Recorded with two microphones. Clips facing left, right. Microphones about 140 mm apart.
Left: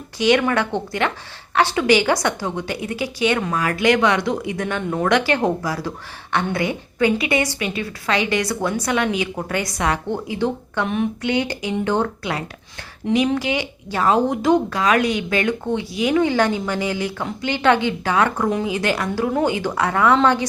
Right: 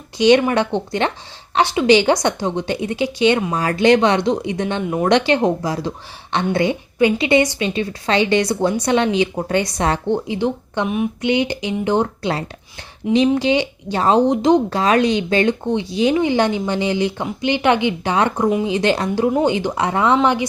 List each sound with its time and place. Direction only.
0.2 s a woman's voice: 25° right (ahead or behind)
11.2 s a woman's voice: 20° right (ahead or behind)